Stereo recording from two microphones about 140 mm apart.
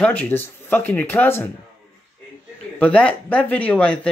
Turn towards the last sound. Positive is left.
turn(degrees=10)  # may be behind; listen again after turning